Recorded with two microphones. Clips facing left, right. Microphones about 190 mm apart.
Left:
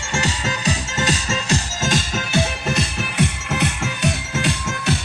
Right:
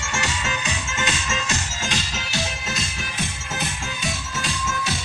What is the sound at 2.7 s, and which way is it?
Music, 65° left (ahead or behind).